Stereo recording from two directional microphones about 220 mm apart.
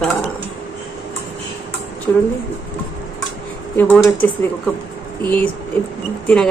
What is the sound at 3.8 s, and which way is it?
Speech, 10° left (ahead or behind).